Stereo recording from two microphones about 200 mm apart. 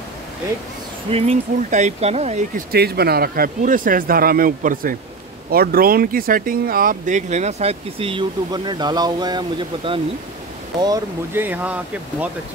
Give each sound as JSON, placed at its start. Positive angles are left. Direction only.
{"t": 1.1, "sound": "speech", "side_deg": -35}
{"t": 2.7, "sound": "speech", "side_deg": -50}